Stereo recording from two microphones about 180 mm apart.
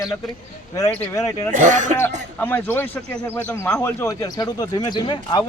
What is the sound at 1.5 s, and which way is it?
Speech, 45° right (ahead or behind).